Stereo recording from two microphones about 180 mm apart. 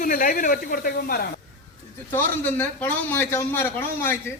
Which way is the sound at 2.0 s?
10° left (ahead or behind).